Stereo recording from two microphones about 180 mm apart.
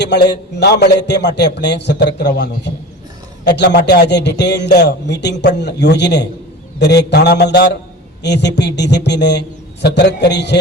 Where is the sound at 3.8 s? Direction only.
65° left (ahead or behind).